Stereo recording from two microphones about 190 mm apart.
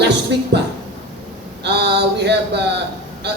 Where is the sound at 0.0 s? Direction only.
60° right (ahead or behind).